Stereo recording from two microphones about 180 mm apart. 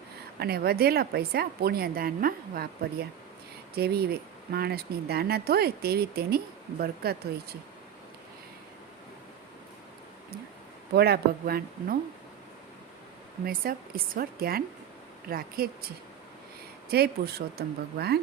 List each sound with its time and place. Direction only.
0.3 s speech: 60° right (ahead or behind)
10.9 s speech: 60° right (ahead or behind)
13.4 s speech: 55° right (ahead or behind)
16.9 s speech: 60° right (ahead or behind)